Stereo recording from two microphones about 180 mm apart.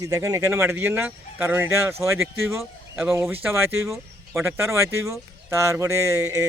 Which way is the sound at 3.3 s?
10° right (ahead or behind).